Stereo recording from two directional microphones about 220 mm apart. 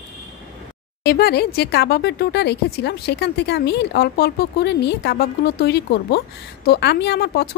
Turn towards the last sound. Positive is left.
turn(degrees=45)  # may be behind; listen again after turning